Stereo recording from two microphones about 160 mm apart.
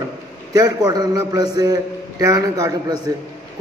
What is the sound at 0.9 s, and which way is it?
A man's voice, 25° right (ahead or behind).